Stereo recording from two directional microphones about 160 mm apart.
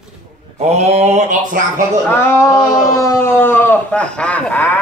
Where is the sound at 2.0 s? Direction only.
15° left (ahead or behind).